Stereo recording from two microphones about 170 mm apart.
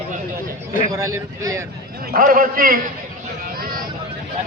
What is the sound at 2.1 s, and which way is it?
Speech, 55° right (ahead or behind).